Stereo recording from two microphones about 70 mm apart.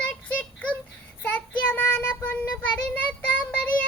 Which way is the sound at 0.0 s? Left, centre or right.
Left.